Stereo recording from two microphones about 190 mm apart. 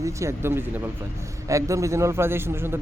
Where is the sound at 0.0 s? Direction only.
15° right (ahead or behind).